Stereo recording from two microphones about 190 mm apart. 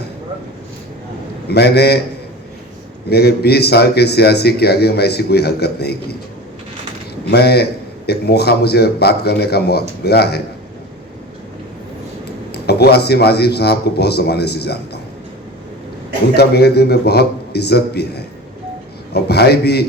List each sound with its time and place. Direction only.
1.5 s a man's voice: 60° left (ahead or behind)
3.1 s a man's voice: 60° left (ahead or behind)
7.3 s a man's voice: 60° left (ahead or behind)
12.5 s a man's voice: 60° left (ahead or behind)
16.3 s a man's voice: 60° left (ahead or behind)